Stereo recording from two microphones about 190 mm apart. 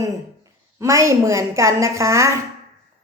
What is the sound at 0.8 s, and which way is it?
A woman's voice, 15° right (ahead or behind).